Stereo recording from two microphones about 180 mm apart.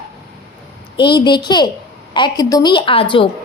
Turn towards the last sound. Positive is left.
turn(degrees=30)  # may be behind; listen again after turning